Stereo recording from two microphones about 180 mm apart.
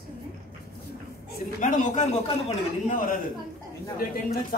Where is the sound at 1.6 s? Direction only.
40° left (ahead or behind).